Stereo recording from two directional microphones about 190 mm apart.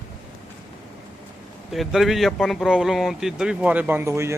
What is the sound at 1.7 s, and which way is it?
Speech, centre (ahead or behind).